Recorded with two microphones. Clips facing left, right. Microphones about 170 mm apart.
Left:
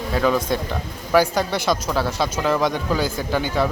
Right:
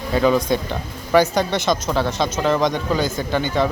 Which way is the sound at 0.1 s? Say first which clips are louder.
Right 3 dB; centre (ahead or behind).